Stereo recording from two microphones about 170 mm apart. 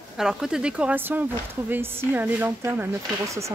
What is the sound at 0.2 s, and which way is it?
Speech, 5° right (ahead or behind).